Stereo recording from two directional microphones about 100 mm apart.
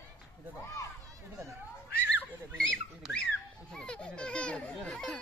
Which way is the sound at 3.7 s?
5° left (ahead or behind).